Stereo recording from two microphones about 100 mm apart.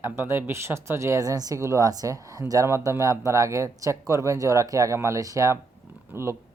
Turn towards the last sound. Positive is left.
turn(degrees=-20)  # may be behind; listen again after turning